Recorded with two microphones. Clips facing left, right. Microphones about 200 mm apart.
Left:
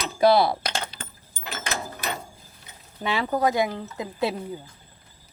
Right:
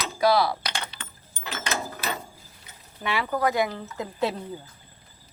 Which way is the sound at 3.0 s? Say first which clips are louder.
Left 2 dB; 25° left (ahead or behind).